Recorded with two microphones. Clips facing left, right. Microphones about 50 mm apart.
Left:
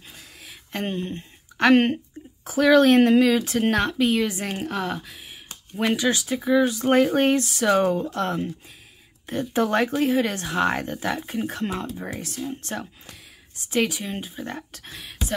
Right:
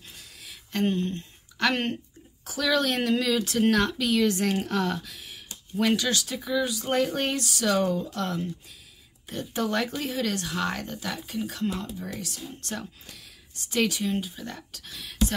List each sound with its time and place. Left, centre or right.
0.1 s a sound: centre
2.4 s speech: left
4.3 s speech: centre
6.5 s speech: left
12.6 s speech: left
15.0 s a sound: centre